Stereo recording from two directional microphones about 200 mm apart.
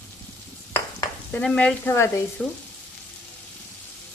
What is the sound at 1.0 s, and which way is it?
Stir, 10° left (ahead or behind).